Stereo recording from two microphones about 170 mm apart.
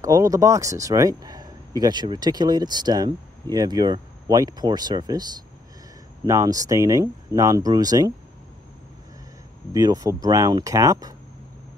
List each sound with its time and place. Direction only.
0.0 s speech: 20° right (ahead or behind)
9.7 s speech: 25° right (ahead or behind)